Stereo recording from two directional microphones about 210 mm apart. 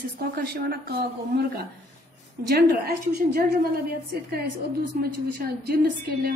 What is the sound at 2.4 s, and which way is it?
A woman's voice, 50° right (ahead or behind).